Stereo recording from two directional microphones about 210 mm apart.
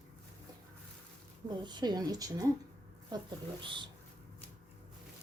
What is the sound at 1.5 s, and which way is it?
A woman's voice, 20° right (ahead or behind).